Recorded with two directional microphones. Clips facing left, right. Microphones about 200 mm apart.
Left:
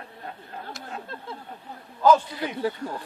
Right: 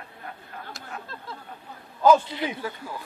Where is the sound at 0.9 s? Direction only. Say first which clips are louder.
Left 1 dB; 20° left (ahead or behind).